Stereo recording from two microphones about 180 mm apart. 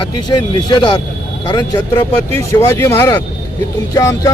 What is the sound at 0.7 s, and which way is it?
A man's voice, 25° left (ahead or behind).